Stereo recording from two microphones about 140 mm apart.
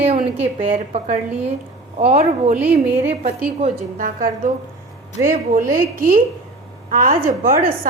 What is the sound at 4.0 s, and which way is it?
A woman's voice, 75° right (ahead or behind).